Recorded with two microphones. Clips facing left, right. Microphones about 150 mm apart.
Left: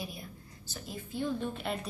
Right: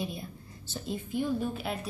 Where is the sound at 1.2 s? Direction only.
10° right (ahead or behind).